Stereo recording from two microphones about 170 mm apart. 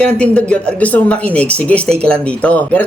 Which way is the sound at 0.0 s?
5° left (ahead or behind).